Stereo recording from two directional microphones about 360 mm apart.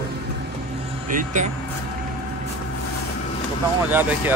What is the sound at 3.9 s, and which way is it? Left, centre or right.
Speech, centre.